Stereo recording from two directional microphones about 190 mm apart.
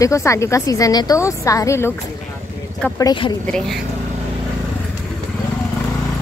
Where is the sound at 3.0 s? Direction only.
20° left (ahead or behind).